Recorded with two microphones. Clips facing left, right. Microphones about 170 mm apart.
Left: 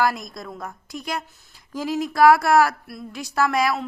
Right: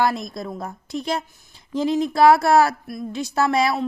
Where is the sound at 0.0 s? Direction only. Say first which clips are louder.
Right 1 dB; 25° right (ahead or behind).